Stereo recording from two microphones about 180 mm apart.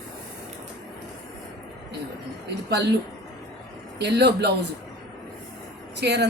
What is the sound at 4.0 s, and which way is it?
Speech, 70° right (ahead or behind).